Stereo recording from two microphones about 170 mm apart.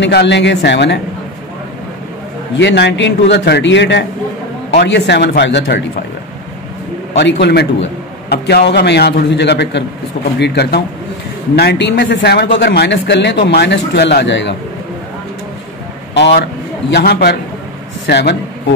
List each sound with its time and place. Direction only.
0.0 s a man's voice: 85° left
2.5 s a man's voice: 85° left
7.2 s a man's voice: 80° left
10.4 s a man's voice: 75° left (ahead or behind); by 14.5 s 90° left
16.9 s a man's voice: 70° left (ahead or behind)